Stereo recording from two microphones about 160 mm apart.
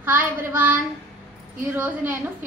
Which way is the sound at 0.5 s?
10° right (ahead or behind).